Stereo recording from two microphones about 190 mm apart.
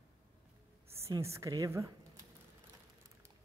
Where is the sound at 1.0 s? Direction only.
15° right (ahead or behind).